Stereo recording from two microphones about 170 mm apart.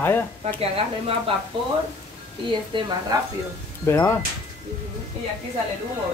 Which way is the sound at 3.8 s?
15° left (ahead or behind).